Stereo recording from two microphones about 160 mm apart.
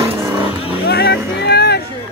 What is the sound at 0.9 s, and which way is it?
Music, 90° left.